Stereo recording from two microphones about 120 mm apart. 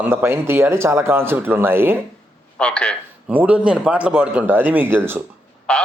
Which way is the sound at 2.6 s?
10° left (ahead or behind).